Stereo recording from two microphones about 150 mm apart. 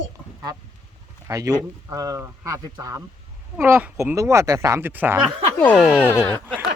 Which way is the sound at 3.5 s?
10° right (ahead or behind).